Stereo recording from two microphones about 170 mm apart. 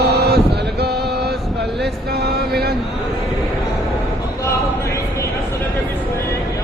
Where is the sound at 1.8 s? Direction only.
70° right (ahead or behind).